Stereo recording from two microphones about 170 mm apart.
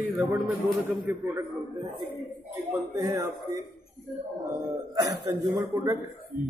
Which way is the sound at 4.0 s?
Centre (ahead or behind).